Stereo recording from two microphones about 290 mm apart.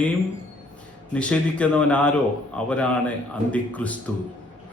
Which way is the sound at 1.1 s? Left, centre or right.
Centre.